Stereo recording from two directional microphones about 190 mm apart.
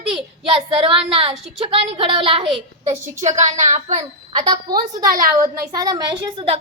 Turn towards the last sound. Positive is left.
turn(degrees=-25)  # may be behind; listen again after turning